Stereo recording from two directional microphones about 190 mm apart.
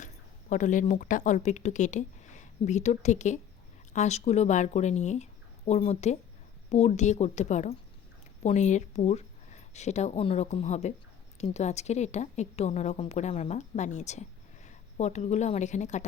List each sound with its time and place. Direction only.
0.5 s a woman's voice: 40° left (ahead or behind)